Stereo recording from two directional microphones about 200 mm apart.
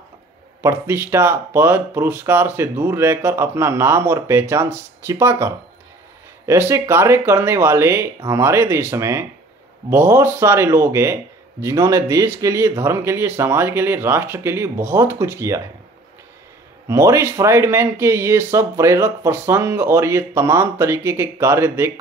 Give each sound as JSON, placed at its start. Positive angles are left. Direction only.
{"t": 0.6, "sound": "speech", "side_deg": -10}
{"t": 16.8, "sound": "speech", "side_deg": -15}